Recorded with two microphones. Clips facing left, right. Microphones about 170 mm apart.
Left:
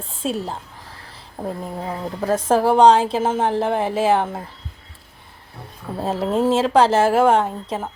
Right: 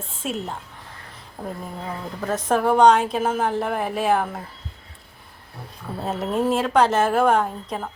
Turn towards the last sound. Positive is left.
turn(degrees=25)  # may be behind; listen again after turning